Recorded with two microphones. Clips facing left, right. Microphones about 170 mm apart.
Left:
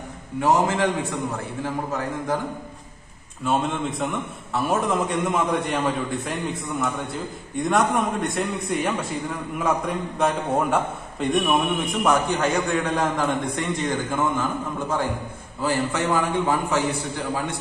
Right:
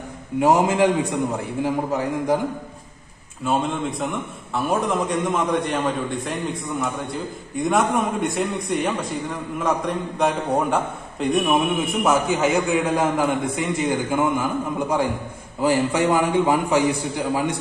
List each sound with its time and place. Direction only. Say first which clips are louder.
0.4 s a man's voice: right 3 dB; 15° right (ahead or behind)
3.4 s a man's voice: right 1 dB; centre (ahead or behind); by 17.6 s 15° right (ahead or behind)